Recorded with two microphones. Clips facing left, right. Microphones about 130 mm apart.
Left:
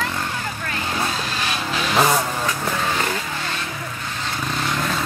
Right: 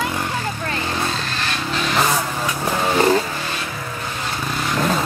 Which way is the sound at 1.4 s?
5° left (ahead or behind).